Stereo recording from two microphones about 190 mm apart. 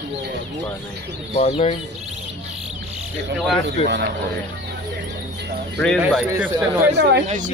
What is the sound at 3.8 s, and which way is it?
Speech, 65° right (ahead or behind).